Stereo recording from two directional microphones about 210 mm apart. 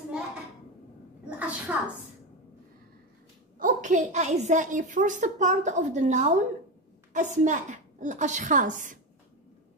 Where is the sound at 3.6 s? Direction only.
35° right (ahead or behind).